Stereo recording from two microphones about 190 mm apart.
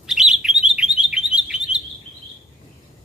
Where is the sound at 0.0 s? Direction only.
Centre (ahead or behind).